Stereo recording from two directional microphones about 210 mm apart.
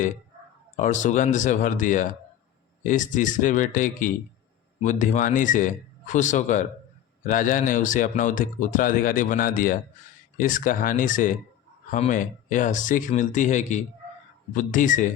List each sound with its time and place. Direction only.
0.8 s speech: 35° left (ahead or behind)
4.8 s speech: 35° left (ahead or behind)